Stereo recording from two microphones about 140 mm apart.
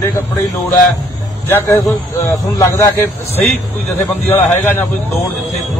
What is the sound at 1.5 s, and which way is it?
A man's voice, 15° left (ahead or behind).